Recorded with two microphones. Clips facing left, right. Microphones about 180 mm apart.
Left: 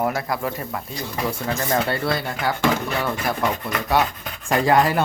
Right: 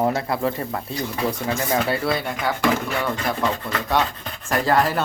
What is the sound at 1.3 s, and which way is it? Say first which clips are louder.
Speech: left 2 dB; 5° right (ahead or behind).